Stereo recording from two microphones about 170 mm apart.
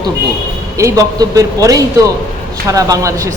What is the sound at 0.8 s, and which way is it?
A man's voice, 20° right (ahead or behind).